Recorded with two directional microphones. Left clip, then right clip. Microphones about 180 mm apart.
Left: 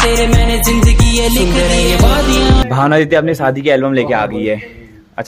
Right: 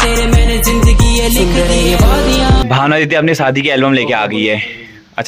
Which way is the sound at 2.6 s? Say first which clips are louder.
Even; 20° right (ahead or behind).